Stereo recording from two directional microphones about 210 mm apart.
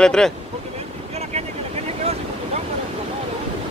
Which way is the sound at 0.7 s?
30° right (ahead or behind).